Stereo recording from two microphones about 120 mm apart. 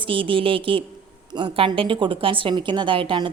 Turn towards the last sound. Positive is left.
turn(degrees=-40)  # may be behind; listen again after turning